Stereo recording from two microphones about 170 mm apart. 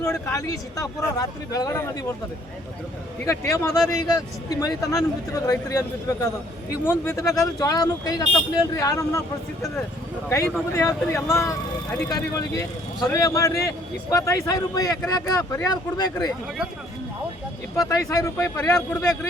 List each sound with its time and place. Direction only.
0.0 s speech: 20° left (ahead or behind)
3.2 s speech: 15° left (ahead or behind)
10.2 s speech: 15° left (ahead or behind)
17.7 s speech: 20° left (ahead or behind)